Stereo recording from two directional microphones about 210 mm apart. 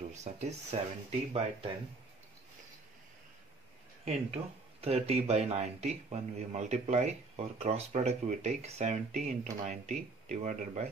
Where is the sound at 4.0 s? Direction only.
30° right (ahead or behind).